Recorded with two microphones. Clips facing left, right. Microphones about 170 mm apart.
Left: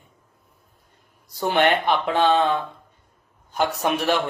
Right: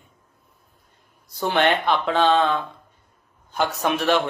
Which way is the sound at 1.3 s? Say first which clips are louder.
Left 1 dB; 15° left (ahead or behind).